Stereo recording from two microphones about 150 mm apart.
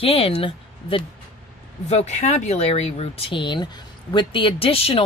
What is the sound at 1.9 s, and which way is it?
Speech, 50° left (ahead or behind).